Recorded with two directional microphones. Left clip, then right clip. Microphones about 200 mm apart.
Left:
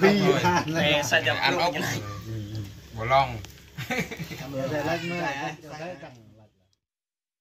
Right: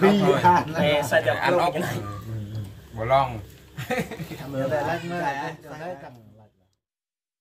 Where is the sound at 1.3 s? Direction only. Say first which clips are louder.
Right 2 dB; 35° right (ahead or behind).